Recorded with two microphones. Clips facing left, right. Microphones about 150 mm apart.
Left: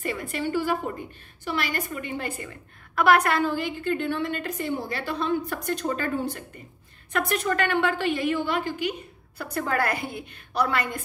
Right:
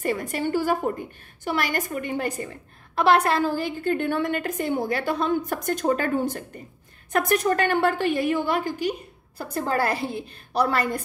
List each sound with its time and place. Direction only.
0.0 s a woman's voice: 45° right (ahead or behind)
3.0 s a woman's voice: 30° right (ahead or behind)